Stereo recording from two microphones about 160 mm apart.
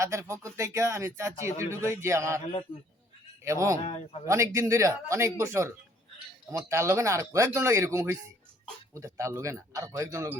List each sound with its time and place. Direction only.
0.0 s speech: 20° right (ahead or behind)
3.4 s speech: 20° right (ahead or behind)
3.8 s speech: 35° left (ahead or behind)
4.3 s speech: 20° right (ahead or behind)